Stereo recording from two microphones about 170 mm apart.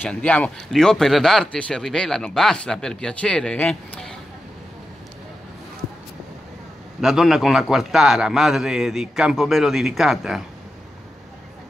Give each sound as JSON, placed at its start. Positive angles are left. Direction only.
{"t": 0.0, "sound": "speech", "side_deg": 5}
{"t": 7.0, "sound": "speech", "side_deg": 0}